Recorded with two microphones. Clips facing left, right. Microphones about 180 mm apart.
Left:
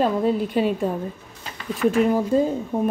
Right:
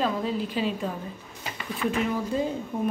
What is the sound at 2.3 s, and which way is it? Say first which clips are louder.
Speech: left 8 dB; 40° left (ahead or behind).